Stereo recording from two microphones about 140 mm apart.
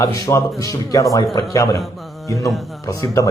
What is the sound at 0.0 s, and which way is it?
Speech, 25° left (ahead or behind).